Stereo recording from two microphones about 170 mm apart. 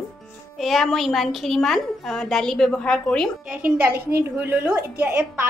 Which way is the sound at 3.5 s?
10° right (ahead or behind).